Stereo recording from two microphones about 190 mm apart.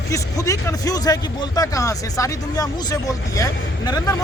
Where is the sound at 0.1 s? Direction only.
15° left (ahead or behind).